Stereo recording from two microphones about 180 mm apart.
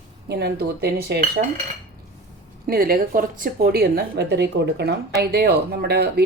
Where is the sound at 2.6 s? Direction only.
55° right (ahead or behind).